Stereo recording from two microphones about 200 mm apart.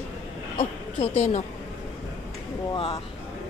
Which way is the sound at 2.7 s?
25° left (ahead or behind).